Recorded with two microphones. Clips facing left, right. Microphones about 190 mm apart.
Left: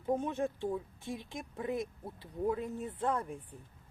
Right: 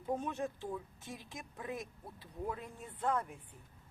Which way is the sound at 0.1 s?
20° left (ahead or behind).